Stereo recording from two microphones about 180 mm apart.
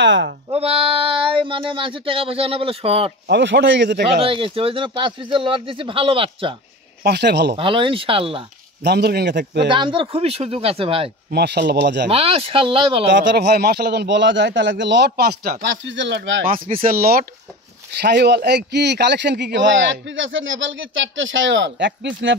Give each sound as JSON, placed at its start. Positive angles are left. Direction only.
{"t": 0.0, "sound": "speech", "side_deg": -85}
{"t": 0.5, "sound": "speech", "side_deg": -35}
{"t": 3.3, "sound": "speech", "side_deg": -70}
{"t": 4.2, "sound": "speech", "side_deg": -30}
{"t": 7.0, "sound": "speech", "side_deg": -65}
{"t": 7.5, "sound": "speech", "side_deg": -30}
{"t": 8.8, "sound": "speech", "side_deg": -65}
{"t": 9.7, "sound": "speech", "side_deg": -25}
{"t": 11.3, "sound": "speech", "side_deg": -65}
{"t": 12.1, "sound": "speech", "side_deg": -30}
{"t": 13.0, "sound": "speech", "side_deg": -75}
{"t": 16.4, "sound": "speech", "side_deg": -50}
{"t": 18.0, "sound": "speech", "side_deg": -65}